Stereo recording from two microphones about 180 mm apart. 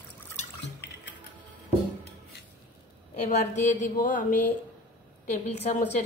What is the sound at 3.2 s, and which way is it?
A woman's voice, 40° left (ahead or behind).